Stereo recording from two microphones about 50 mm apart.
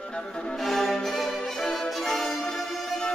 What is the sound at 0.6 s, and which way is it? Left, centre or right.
Violin, centre.